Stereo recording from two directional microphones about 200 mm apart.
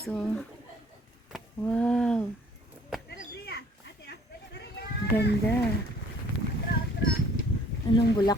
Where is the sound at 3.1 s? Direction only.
55° left (ahead or behind).